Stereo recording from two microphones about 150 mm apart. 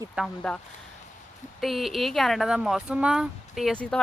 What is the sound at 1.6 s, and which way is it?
Speech, centre (ahead or behind).